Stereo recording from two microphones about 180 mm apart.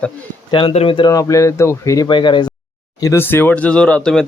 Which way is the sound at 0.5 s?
30° left (ahead or behind).